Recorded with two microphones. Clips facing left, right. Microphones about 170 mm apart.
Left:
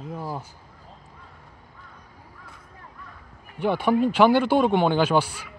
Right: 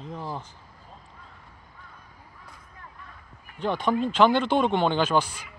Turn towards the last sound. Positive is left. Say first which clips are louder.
# left 3 dB
turn(degrees=10)  # may be behind; listen again after turning